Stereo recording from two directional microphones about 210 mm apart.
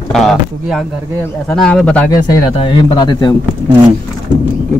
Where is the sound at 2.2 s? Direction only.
20° left (ahead or behind).